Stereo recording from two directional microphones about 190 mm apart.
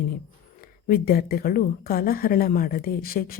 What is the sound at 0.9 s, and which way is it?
Speech, 50° left (ahead or behind).